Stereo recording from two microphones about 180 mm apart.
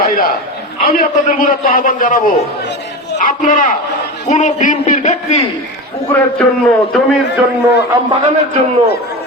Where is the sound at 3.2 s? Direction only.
50° left (ahead or behind).